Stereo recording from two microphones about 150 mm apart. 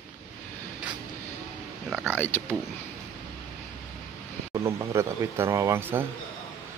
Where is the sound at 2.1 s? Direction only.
15° left (ahead or behind).